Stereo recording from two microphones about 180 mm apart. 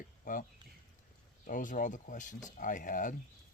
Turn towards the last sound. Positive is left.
turn(degrees=45)  # may be behind; listen again after turning